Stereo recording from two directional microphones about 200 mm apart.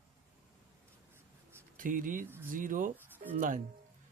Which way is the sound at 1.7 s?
40° right (ahead or behind).